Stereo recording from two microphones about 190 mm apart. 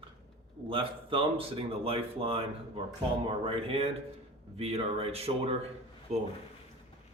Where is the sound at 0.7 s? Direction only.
30° right (ahead or behind).